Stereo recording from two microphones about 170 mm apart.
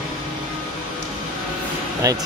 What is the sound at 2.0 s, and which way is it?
Speech, 20° right (ahead or behind).